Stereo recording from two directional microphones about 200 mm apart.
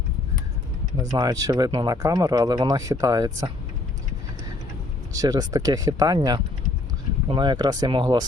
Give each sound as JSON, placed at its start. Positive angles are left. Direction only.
{"t": 1.1, "sound": "speech", "side_deg": -15}
{"t": 5.1, "sound": "speech", "side_deg": -15}